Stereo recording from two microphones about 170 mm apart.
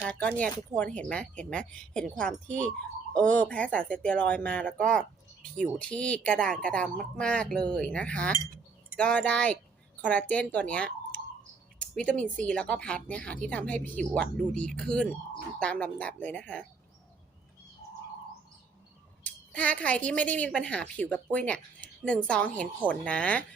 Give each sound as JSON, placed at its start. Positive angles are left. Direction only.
{"t": 0.0, "sound": "speech", "side_deg": 5}
{"t": 19.2, "sound": "a sound", "side_deg": 10}
{"t": 20.1, "sound": "speech", "side_deg": 10}